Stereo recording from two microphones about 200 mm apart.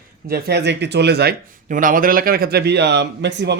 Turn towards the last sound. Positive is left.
turn(degrees=-60)  # may be behind; listen again after turning